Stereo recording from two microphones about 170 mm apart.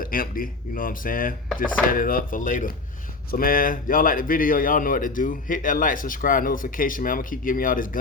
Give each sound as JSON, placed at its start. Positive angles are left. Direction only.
{"t": 0.0, "sound": "speech", "side_deg": 55}